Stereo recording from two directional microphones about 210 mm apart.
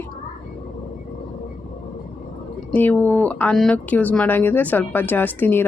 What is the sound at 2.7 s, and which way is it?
Speech, 10° left (ahead or behind).